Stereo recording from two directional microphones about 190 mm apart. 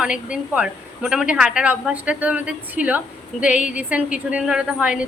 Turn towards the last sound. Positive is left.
turn(degrees=-5)  # may be behind; listen again after turning